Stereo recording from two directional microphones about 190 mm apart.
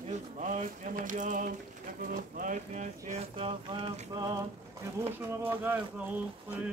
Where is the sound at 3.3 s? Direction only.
25° right (ahead or behind).